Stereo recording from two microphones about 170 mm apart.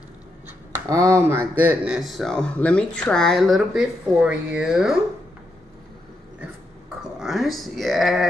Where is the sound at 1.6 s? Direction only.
5° right (ahead or behind).